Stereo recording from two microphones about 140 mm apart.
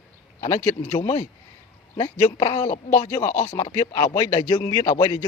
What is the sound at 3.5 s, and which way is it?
Speech, 25° left (ahead or behind).